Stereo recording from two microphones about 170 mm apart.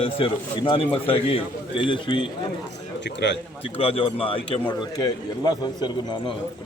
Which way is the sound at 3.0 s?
90° left.